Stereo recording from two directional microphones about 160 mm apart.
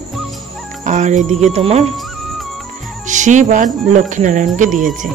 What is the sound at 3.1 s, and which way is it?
Speech, 50° right (ahead or behind).